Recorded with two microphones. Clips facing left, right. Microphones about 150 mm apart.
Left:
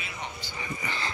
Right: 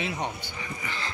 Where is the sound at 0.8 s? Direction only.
Centre (ahead or behind).